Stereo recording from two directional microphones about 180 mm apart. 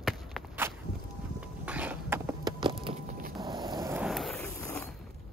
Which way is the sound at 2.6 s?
30° right (ahead or behind).